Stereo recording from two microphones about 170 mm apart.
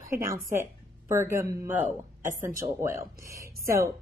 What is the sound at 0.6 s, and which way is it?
Speech, 15° right (ahead or behind).